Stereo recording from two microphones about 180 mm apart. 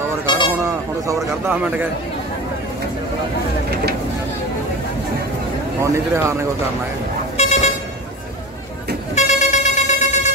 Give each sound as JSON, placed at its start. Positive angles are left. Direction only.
{"t": 0.7, "sound": "speech", "side_deg": -15}
{"t": 5.8, "sound": "speech", "side_deg": -15}
{"t": 7.3, "sound": "vehicle", "side_deg": 35}
{"t": 9.1, "sound": "vehicle", "side_deg": 40}